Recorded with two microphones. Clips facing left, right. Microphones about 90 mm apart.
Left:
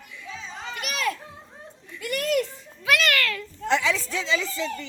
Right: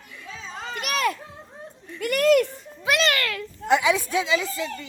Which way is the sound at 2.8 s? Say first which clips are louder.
Right 1 dB; 25° right (ahead or behind).